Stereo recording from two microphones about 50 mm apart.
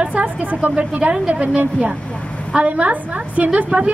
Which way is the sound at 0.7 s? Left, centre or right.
Right.